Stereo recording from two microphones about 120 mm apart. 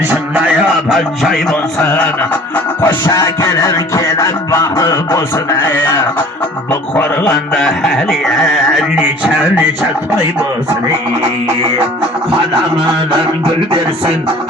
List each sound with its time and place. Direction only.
0.1 s music: 15° right (ahead or behind)
0.9 s music: centre (ahead or behind)
1.8 s music: 10° left (ahead or behind); by 9.6 s 10° right (ahead or behind)
13.7 s music: 45° right (ahead or behind)